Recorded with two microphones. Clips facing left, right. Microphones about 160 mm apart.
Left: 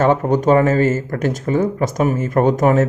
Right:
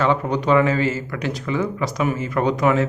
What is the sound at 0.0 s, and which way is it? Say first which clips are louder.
Speech: left 5 dB; 45° left (ahead or behind).